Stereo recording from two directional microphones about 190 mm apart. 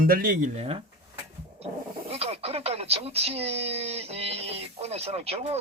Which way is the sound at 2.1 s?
30° right (ahead or behind).